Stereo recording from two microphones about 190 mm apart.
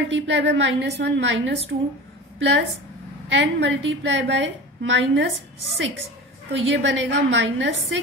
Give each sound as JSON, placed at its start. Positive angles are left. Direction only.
{"t": 0.1, "sound": "a woman's voice", "side_deg": -70}
{"t": 1.7, "sound": "speech", "side_deg": -60}
{"t": 2.3, "sound": "a woman's voice", "side_deg": -75}
{"t": 6.5, "sound": "a woman's voice", "side_deg": -70}